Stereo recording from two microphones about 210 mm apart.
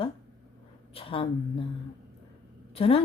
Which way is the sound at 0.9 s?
25° left (ahead or behind).